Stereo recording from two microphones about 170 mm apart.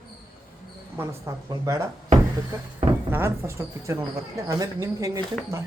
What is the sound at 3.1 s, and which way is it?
Speech, 15° right (ahead or behind).